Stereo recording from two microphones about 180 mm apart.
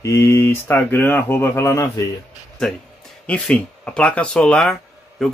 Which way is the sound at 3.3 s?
5° left (ahead or behind).